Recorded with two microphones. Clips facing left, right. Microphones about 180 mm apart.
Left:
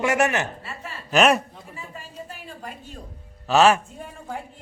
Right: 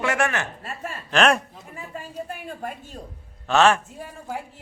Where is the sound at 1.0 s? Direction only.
5° left (ahead or behind).